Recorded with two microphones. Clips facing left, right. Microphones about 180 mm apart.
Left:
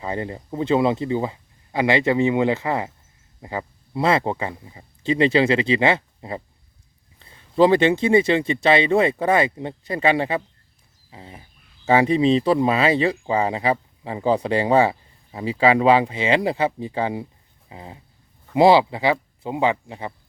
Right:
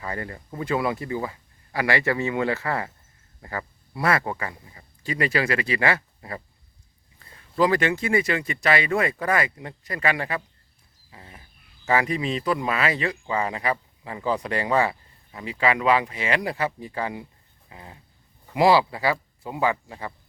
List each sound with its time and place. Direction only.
0.0 s speech: 20° left (ahead or behind)
17.7 s a sound: 25° left (ahead or behind)
18.5 s speech: 25° left (ahead or behind)